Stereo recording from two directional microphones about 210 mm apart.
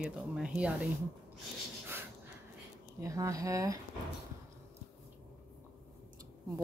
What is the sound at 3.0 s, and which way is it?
Speech, 15° right (ahead or behind).